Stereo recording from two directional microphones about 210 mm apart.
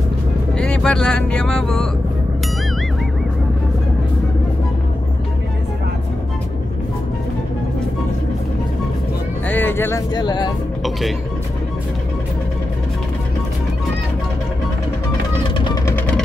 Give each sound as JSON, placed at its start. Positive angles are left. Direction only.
{"t": 0.6, "sound": "speech", "side_deg": 5}
{"t": 9.5, "sound": "speech", "side_deg": 10}
{"t": 10.8, "sound": "speech", "side_deg": 0}
{"t": 15.5, "sound": "vehicle", "side_deg": 20}